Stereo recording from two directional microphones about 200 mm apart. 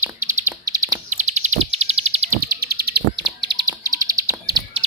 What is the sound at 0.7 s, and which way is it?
Bird, 20° right (ahead or behind).